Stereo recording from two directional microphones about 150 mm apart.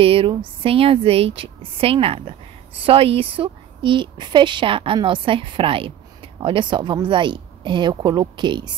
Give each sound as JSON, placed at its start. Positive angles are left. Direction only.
{"t": 0.0, "sound": "speech", "side_deg": -40}